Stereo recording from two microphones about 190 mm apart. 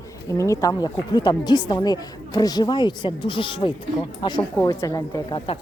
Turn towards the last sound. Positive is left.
turn(degrees=25)  # may be behind; listen again after turning